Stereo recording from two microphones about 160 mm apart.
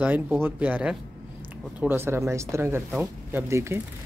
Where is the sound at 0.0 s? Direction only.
10° right (ahead or behind).